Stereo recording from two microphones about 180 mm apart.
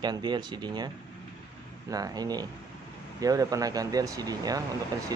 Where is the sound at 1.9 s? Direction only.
20° right (ahead or behind).